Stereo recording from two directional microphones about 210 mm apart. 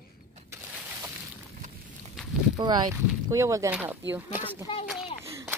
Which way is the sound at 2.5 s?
20° right (ahead or behind).